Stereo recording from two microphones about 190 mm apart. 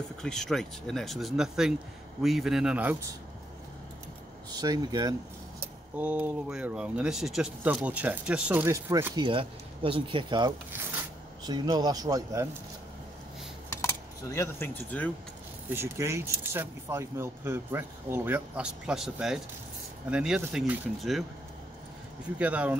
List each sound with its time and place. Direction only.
0.2 s speech: 5° left (ahead or behind)
4.6 s speech: 20° right (ahead or behind)
5.9 s speech: 5° right (ahead or behind)
9.1 s speech: 25° right (ahead or behind)
13.7 s keys jangling: 15° left (ahead or behind)
15.7 s speech: 15° right (ahead or behind)
22.4 s speech: 5° right (ahead or behind)